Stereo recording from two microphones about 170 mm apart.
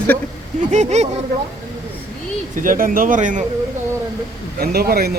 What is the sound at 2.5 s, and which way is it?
Speech, 50° right (ahead or behind).